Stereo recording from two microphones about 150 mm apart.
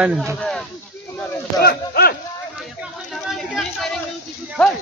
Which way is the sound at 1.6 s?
90° left.